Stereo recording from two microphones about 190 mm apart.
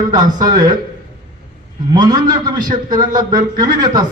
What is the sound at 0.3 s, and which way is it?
Speech, 20° right (ahead or behind).